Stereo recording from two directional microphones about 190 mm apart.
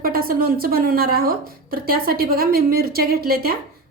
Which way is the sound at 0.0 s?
50° right (ahead or behind).